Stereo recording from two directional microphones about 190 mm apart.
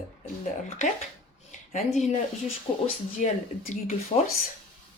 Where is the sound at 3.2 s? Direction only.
40° left (ahead or behind).